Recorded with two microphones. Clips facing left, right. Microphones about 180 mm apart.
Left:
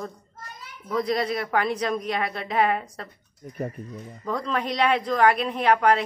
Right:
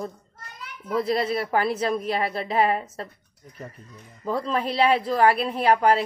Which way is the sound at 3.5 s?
55° left (ahead or behind).